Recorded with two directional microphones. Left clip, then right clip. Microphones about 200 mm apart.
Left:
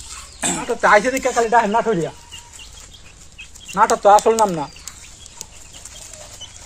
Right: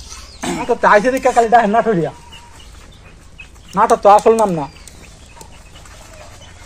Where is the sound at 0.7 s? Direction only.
20° right (ahead or behind).